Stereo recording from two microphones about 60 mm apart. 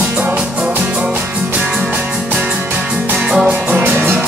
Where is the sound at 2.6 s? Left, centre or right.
Right.